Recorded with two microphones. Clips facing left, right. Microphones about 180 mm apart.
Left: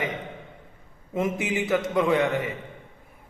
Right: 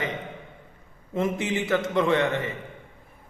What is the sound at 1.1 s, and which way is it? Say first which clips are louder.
A man's voice: even; 15° left (ahead or behind).